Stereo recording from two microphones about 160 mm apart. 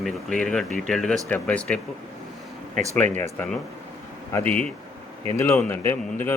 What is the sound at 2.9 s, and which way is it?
Speech, 10° left (ahead or behind).